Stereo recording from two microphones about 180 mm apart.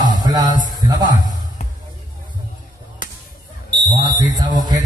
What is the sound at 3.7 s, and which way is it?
Smoke detector, 25° right (ahead or behind).